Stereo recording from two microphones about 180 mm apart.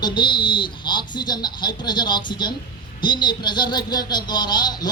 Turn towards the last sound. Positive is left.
turn(degrees=25)  # may be behind; listen again after turning